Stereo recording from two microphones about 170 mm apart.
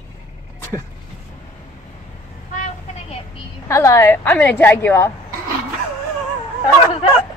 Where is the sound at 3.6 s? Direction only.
15° left (ahead or behind).